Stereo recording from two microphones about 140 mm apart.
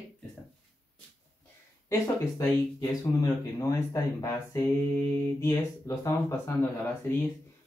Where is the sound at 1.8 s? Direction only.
25° left (ahead or behind).